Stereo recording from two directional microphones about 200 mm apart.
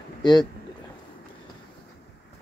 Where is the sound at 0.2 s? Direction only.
20° left (ahead or behind).